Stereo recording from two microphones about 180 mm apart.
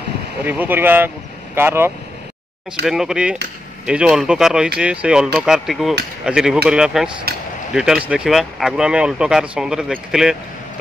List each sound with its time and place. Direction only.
0.4 s speech: 10° right (ahead or behind)
7.3 s a sound: 60° right (ahead or behind)
7.7 s speech: 5° right (ahead or behind)